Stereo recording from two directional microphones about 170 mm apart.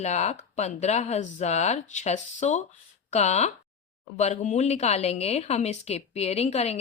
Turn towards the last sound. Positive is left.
turn(degrees=40)  # may be behind; listen again after turning